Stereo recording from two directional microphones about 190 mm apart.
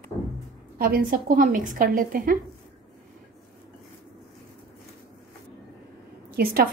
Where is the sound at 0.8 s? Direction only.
50° right (ahead or behind).